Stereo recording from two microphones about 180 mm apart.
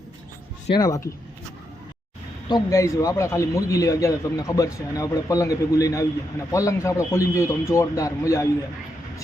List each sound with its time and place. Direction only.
0.7 s speech: 20° left (ahead or behind)
2.5 s a man's voice: 15° left (ahead or behind)